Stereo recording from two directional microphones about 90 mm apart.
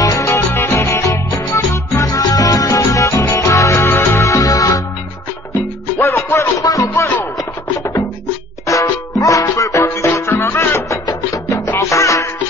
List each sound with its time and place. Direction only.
0.0 s music: 35° left (ahead or behind)
5.9 s music: 30° left (ahead or behind)
6.6 s music: 40° left (ahead or behind)
8.6 s music: 35° left (ahead or behind)
11.1 s music: 40° left (ahead or behind)